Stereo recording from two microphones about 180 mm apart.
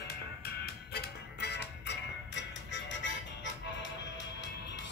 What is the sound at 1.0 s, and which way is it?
Music, 65° left (ahead or behind).